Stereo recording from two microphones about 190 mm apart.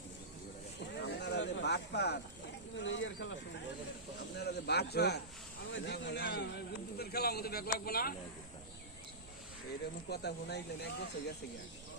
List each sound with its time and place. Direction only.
1.0 s a sound: 65° left (ahead or behind)
2.7 s speech: 80° left
4.4 s speech: 60° left (ahead or behind)
10.1 s speech: 60° left (ahead or behind)